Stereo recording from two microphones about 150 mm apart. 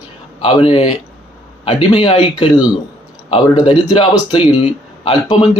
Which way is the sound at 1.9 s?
35° left (ahead or behind).